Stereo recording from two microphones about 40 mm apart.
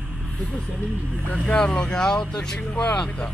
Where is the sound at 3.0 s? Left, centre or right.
Left.